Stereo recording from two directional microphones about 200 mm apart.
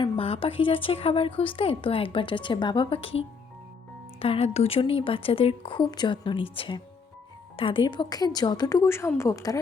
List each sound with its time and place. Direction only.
0.0 s a woman's voice: 30° left (ahead or behind)